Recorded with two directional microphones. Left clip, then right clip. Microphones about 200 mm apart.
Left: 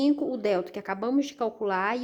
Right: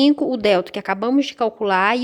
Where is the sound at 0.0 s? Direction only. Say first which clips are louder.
Right 9 dB; 40° right (ahead or behind).